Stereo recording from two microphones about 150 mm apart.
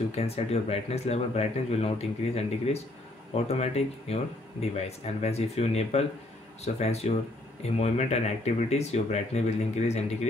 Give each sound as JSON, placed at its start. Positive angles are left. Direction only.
{"t": 0.1, "sound": "speech", "side_deg": 45}